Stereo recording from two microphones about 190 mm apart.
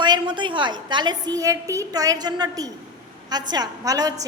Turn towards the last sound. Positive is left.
turn(degrees=-20)  # may be behind; listen again after turning